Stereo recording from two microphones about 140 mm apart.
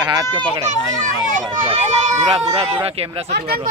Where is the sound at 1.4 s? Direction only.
35° right (ahead or behind).